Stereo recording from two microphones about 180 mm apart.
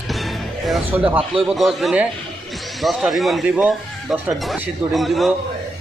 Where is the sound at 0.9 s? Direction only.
10° right (ahead or behind).